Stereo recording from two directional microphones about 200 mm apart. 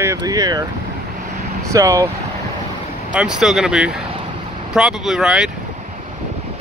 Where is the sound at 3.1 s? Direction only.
5° right (ahead or behind).